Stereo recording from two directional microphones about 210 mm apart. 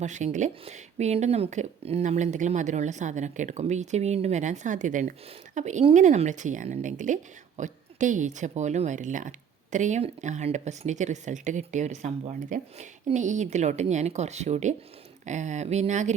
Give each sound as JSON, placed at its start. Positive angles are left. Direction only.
{"t": 0.0, "sound": "speech", "side_deg": -35}